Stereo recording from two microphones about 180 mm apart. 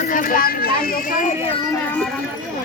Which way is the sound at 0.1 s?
50° left (ahead or behind).